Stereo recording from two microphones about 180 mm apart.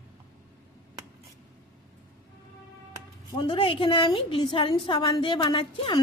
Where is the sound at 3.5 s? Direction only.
25° left (ahead or behind).